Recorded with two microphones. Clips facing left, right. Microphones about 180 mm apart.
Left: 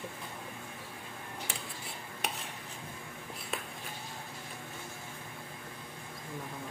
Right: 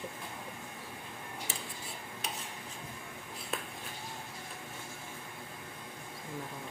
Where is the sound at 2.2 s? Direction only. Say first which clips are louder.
Left 4 dB; 60° left (ahead or behind).